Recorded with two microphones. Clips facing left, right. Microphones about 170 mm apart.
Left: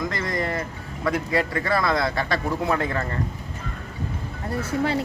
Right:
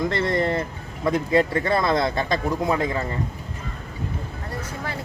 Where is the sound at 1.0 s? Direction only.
20° right (ahead or behind).